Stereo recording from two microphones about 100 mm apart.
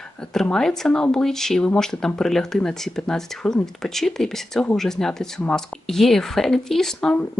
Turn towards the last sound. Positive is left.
turn(degrees=5)  # may be behind; listen again after turning